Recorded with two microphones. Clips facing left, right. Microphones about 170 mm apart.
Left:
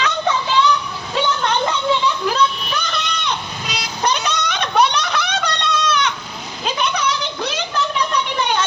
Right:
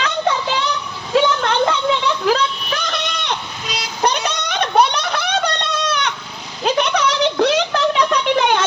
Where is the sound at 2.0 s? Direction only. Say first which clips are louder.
Right 1 dB; 90° right.